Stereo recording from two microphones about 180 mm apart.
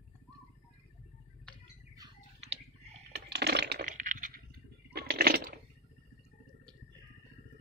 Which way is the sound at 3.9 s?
45° right (ahead or behind).